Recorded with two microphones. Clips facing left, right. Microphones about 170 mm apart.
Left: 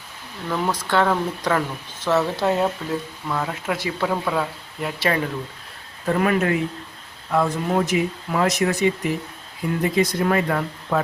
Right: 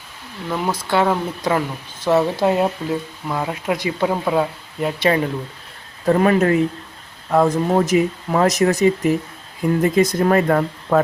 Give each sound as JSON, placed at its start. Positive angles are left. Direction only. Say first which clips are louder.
{"t": 0.5, "sound": "speech", "louder": "right 2 dB", "side_deg": -10}